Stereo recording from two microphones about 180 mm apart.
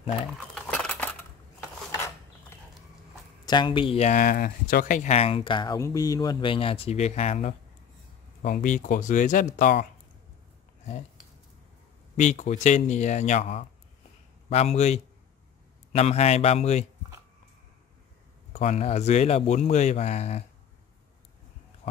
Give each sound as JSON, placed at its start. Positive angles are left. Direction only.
{"t": 0.6, "sound": "cutlery", "side_deg": 5}
{"t": 3.4, "sound": "speech", "side_deg": 25}
{"t": 12.2, "sound": "speech", "side_deg": 40}
{"t": 18.5, "sound": "speech", "side_deg": 35}